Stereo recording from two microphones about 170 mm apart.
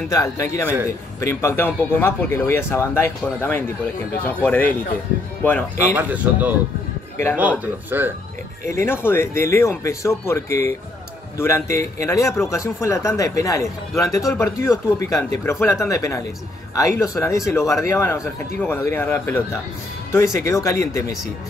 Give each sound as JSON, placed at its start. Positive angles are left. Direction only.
{"t": 0.1, "sound": "speech", "side_deg": 15}
{"t": 5.9, "sound": "a man's voice", "side_deg": -10}
{"t": 8.7, "sound": "speech", "side_deg": 15}